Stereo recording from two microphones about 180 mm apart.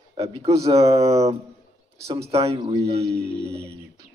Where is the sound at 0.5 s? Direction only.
20° right (ahead or behind).